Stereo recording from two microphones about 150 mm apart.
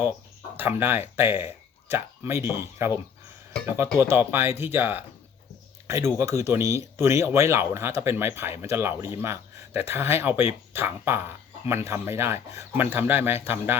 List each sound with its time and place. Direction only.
0.6 s speech: 15° right (ahead or behind)